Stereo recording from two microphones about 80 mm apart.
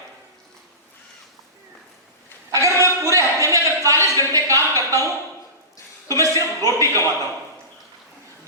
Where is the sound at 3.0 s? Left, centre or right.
Right.